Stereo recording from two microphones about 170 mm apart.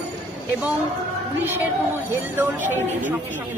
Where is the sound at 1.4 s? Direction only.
15° right (ahead or behind).